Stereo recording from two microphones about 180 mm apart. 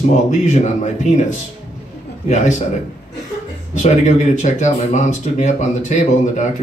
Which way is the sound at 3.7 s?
40° left (ahead or behind).